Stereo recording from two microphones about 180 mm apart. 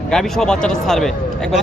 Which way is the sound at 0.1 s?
5° left (ahead or behind).